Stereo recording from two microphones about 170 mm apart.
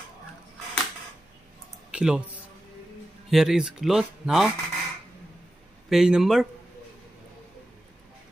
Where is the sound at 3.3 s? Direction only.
Centre (ahead or behind).